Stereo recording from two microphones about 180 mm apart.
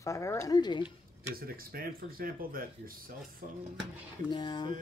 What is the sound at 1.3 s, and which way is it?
Speech, 55° right (ahead or behind).